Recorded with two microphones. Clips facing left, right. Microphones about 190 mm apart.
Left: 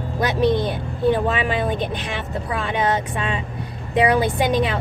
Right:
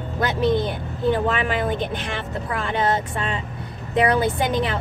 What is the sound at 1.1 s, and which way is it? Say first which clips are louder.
A woman's voice: left 2 dB; 15° left (ahead or behind).